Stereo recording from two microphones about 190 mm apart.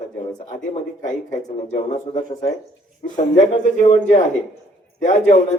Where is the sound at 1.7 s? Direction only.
35° left (ahead or behind).